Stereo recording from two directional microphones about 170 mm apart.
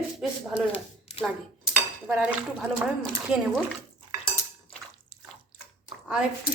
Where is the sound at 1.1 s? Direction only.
40° left (ahead or behind).